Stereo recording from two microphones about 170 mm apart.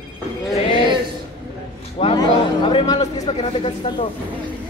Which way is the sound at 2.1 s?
25° left (ahead or behind).